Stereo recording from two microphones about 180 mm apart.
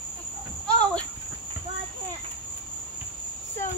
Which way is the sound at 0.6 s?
5° left (ahead or behind).